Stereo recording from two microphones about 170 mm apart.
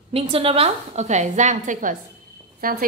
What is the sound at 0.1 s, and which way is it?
A woman's voice, 35° right (ahead or behind).